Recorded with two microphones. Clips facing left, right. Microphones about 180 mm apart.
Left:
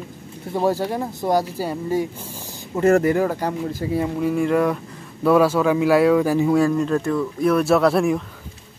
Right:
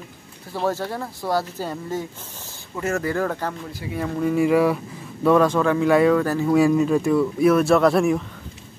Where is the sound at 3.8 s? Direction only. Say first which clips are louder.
Left 7 dB; 40° left (ahead or behind).